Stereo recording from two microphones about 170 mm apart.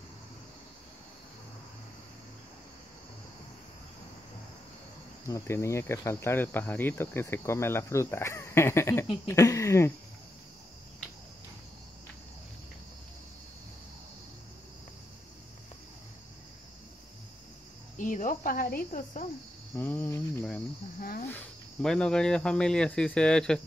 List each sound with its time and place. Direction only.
5.2 s speech: 15° left (ahead or behind)
17.9 s cricket: 50° left (ahead or behind)
18.9 s speech: 50° left (ahead or behind)
19.7 s speech: 10° left (ahead or behind)